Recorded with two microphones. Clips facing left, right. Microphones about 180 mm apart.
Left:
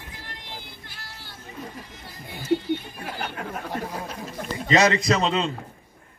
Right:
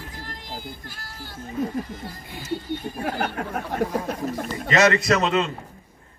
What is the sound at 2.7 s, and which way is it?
Speech, 45° right (ahead or behind).